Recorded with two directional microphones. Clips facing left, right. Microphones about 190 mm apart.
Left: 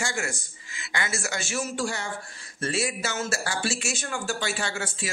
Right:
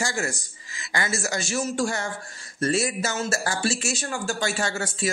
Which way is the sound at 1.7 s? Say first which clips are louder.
Right 4 dB; 50° right (ahead or behind).